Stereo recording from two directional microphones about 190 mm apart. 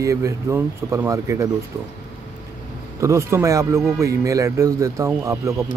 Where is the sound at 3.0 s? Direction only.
15° right (ahead or behind).